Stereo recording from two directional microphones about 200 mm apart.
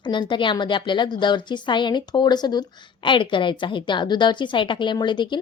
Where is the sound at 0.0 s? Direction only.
25° left (ahead or behind).